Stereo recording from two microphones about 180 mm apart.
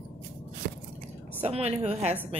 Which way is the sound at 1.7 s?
35° right (ahead or behind).